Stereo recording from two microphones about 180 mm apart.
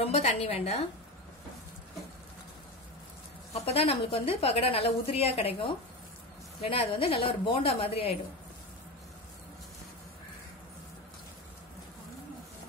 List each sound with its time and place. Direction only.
0.0 s a woman's voice: 35° left (ahead or behind)
3.6 s a woman's voice: 35° left (ahead or behind)